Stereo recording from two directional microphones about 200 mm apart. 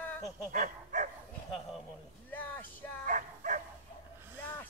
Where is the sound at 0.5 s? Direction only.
40° right (ahead or behind).